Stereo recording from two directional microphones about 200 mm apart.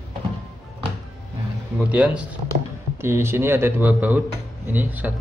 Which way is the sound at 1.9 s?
5° right (ahead or behind).